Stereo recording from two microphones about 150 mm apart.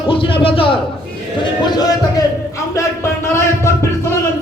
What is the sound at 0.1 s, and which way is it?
A man's voice, 35° left (ahead or behind).